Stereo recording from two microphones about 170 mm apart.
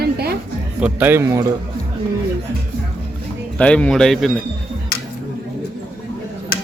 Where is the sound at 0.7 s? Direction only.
10° right (ahead or behind).